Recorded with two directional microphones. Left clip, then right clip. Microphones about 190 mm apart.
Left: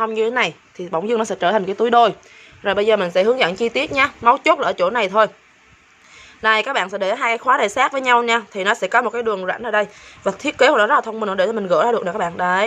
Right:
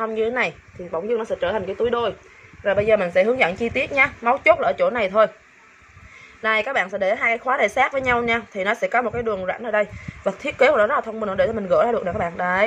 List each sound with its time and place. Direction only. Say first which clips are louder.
0.0 s a woman's voice: left 4 dB; 30° left (ahead or behind)
0.9 s speech: left 3 dB; 55° left (ahead or behind)
2.6 s a woman's voice: left 2 dB; 45° left (ahead or behind); by 5.3 s 25° left (ahead or behind)
6.4 s a woman's voice: left 3 dB; 25° left (ahead or behind)